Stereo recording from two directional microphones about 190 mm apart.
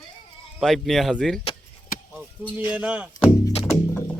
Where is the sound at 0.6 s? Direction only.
Centre (ahead or behind).